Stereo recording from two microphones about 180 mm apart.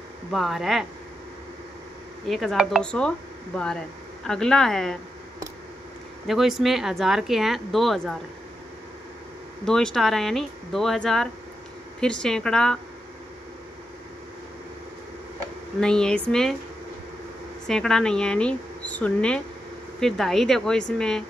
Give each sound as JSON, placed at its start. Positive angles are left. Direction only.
{"t": 0.3, "sound": "speech", "side_deg": 0}
{"t": 2.2, "sound": "speech", "side_deg": 0}
{"t": 6.2, "sound": "speech", "side_deg": 0}
{"t": 9.7, "sound": "speech", "side_deg": 5}
{"t": 15.8, "sound": "speech", "side_deg": 5}
{"t": 17.6, "sound": "speech", "side_deg": 5}